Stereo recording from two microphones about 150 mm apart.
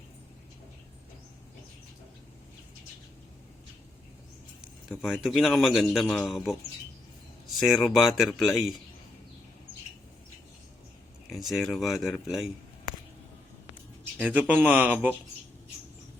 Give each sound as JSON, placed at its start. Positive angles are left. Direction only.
{"t": 4.9, "sound": "a man's voice", "side_deg": 0}
{"t": 7.6, "sound": "a man's voice", "side_deg": 0}
{"t": 11.3, "sound": "a man's voice", "side_deg": 0}
{"t": 14.2, "sound": "speech", "side_deg": -10}